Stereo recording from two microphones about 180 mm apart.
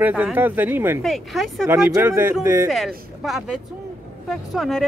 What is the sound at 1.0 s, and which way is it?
Speech, centre (ahead or behind).